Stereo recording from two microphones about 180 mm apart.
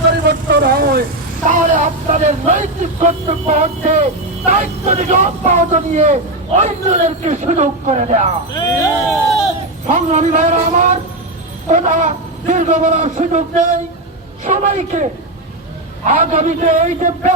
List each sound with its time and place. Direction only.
0.3 s vehicle: 60° right (ahead or behind)
1.5 s speech: 45° right (ahead or behind)
8.5 s speech: 25° left (ahead or behind)
9.9 s a man's voice: 45° right (ahead or behind)
16.0 s a man's voice: 45° right (ahead or behind)